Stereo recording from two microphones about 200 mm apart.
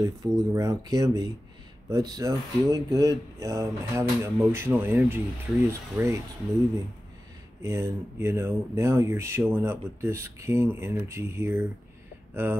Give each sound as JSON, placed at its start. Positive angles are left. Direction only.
{"t": 0.0, "sound": "speech", "side_deg": -20}
{"t": 7.6, "sound": "speech", "side_deg": -15}